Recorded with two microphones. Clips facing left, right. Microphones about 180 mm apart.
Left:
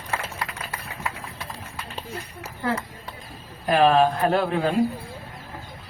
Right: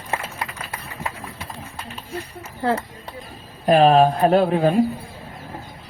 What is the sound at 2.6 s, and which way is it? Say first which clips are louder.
Speech: right 5 dB; 35° right (ahead or behind).